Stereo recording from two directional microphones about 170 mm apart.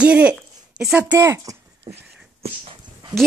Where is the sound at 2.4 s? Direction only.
35° right (ahead or behind).